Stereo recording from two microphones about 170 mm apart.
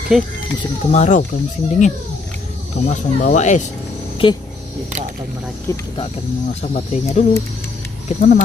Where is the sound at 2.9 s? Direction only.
45° left (ahead or behind).